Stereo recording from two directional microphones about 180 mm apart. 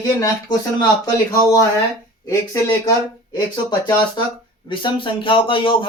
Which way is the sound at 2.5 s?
15° left (ahead or behind).